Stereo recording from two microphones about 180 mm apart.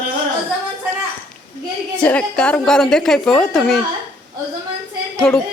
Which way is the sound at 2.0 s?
5° left (ahead or behind).